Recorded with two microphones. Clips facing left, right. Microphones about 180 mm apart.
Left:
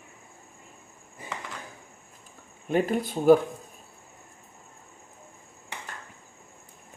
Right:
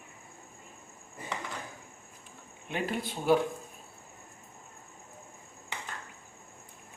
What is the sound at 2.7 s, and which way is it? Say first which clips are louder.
Speech: left 8 dB; 45° left (ahead or behind).